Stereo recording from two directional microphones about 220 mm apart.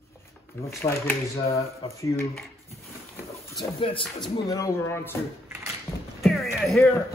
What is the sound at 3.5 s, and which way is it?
Speech, 25° left (ahead or behind).